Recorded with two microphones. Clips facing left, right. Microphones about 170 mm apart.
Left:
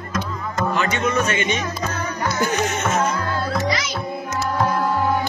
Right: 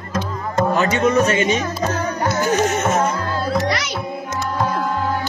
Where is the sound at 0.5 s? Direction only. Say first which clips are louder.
Right 5 dB; 40° right (ahead or behind).